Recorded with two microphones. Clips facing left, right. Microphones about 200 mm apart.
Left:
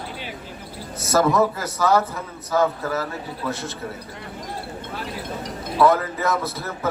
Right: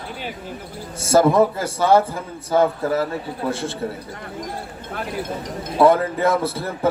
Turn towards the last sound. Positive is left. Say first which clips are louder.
# right 4 dB
turn(degrees=-30)  # may be behind; listen again after turning